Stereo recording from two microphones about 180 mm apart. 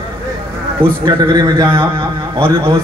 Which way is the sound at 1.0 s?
20° right (ahead or behind).